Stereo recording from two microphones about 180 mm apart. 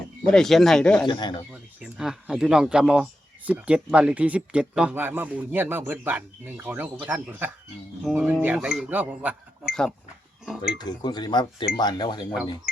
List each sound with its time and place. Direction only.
0.3 s speech: 5° left (ahead or behind)
1.0 s speech: 25° left (ahead or behind)
1.8 s speech: 5° right (ahead or behind)
10.8 s speech: 25° left (ahead or behind)